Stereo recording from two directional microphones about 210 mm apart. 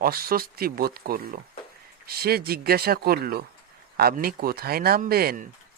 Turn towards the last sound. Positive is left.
turn(degrees=-45)  # may be behind; listen again after turning